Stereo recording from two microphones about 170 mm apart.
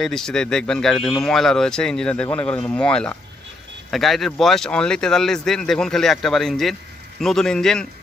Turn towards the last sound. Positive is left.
turn(degrees=5)  # may be behind; listen again after turning